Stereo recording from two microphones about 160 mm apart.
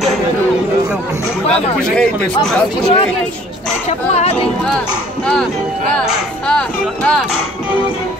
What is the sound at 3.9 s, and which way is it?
Speech, 40° left (ahead or behind).